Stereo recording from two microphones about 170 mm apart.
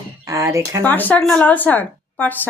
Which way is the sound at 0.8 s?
10° left (ahead or behind).